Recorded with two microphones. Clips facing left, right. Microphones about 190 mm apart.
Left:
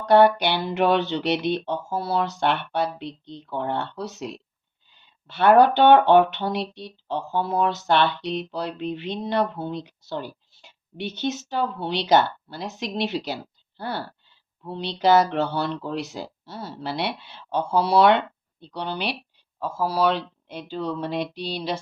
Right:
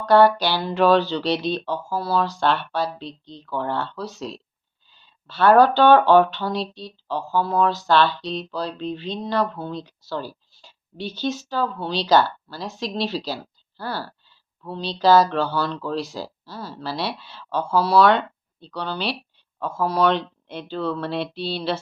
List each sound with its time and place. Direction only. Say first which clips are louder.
0.0 s speech: right 1 dB; 20° left (ahead or behind)
19.5 s speech: right 2 dB; 5° left (ahead or behind)